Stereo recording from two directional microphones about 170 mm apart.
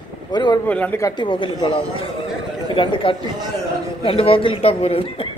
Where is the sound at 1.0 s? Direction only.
30° left (ahead or behind).